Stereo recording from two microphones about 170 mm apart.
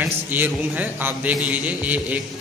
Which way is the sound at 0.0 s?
10° right (ahead or behind).